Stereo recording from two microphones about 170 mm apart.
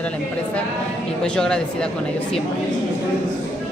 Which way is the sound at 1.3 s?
5° left (ahead or behind).